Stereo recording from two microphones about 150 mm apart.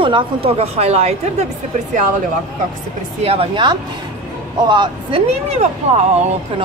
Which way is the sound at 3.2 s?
40° right (ahead or behind).